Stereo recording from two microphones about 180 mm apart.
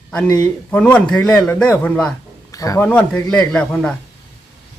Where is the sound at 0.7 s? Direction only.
10° left (ahead or behind).